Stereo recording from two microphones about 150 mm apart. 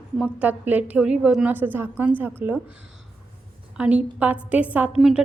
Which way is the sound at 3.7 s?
10° right (ahead or behind).